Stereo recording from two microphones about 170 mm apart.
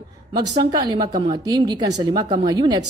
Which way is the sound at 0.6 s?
25° right (ahead or behind).